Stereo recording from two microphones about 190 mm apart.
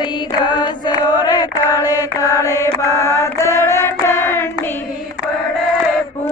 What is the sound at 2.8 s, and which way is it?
Child singing, 15° left (ahead or behind).